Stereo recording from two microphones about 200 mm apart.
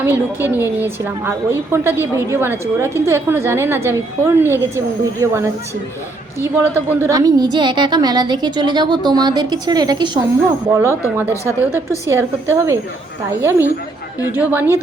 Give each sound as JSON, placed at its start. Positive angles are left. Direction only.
{"t": 0.0, "sound": "a woman's voice", "side_deg": -10}